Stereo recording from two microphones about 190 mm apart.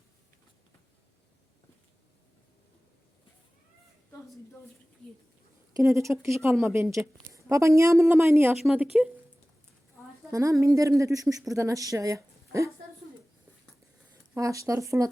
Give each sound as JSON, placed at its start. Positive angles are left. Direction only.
{"t": 5.7, "sound": "speech", "side_deg": -15}
{"t": 10.3, "sound": "speech", "side_deg": -15}
{"t": 14.3, "sound": "speech", "side_deg": -15}